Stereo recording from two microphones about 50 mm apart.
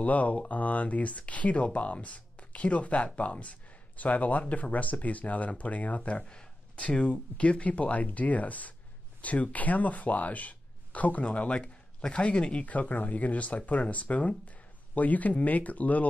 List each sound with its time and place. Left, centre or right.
0.0 s speech: left